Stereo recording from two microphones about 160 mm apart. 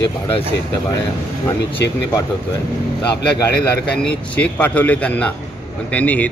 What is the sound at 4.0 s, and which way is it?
Speech, 10° left (ahead or behind).